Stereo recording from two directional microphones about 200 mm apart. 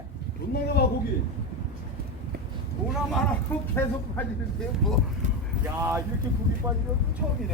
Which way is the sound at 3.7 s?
10° left (ahead or behind).